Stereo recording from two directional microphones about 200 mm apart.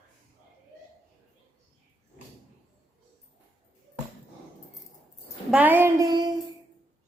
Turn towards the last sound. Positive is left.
turn(degrees=-20)  # may be behind; listen again after turning